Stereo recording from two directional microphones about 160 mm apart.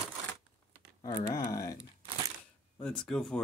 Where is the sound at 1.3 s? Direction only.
20° left (ahead or behind).